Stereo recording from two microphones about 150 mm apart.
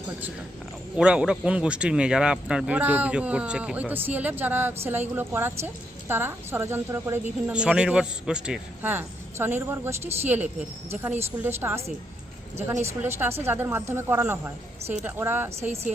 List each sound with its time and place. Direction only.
0.9 s speech: 5° right (ahead or behind)
7.4 s speech: 5° right (ahead or behind)
12.8 s speech: 15° right (ahead or behind)